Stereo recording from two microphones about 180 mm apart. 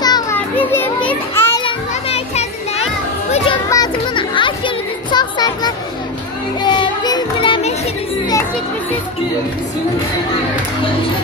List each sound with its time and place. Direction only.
0.0 s children playing: 20° left (ahead or behind)
0.6 s children playing: 10° left (ahead or behind)
1.6 s children playing: 30° left (ahead or behind)
3.6 s music: 20° left (ahead or behind)